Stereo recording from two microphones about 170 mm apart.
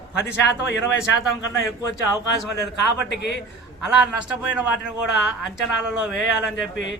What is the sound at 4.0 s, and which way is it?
Speech, 5° right (ahead or behind).